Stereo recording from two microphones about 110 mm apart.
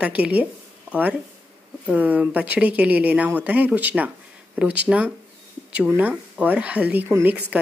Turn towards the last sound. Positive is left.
turn(degrees=-15)  # may be behind; listen again after turning